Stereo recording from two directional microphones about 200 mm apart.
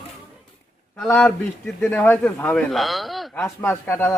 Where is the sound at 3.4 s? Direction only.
10° left (ahead or behind).